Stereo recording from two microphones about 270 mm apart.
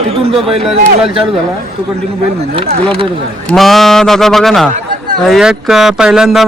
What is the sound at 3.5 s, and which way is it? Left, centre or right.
A man's voice, centre.